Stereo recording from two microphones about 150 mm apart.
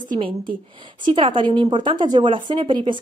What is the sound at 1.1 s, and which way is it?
Speech, 35° right (ahead or behind).